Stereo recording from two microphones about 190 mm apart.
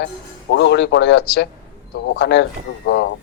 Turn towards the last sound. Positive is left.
turn(degrees=65)  # may be behind; listen again after turning